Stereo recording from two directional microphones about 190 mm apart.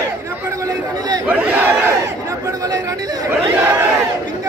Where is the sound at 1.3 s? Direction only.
10° right (ahead or behind).